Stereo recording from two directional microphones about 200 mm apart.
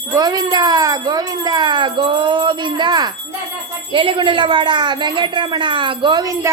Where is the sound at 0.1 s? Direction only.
20° right (ahead or behind).